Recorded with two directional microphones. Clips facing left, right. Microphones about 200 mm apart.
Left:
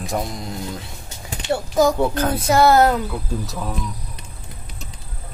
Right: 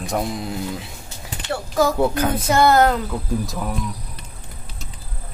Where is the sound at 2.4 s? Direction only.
10° left (ahead or behind).